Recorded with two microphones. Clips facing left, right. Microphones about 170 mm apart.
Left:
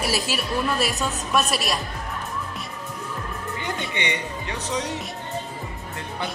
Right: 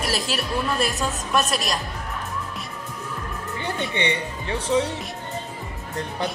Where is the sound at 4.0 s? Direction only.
30° right (ahead or behind).